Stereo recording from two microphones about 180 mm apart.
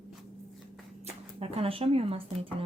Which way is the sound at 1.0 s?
35° right (ahead or behind).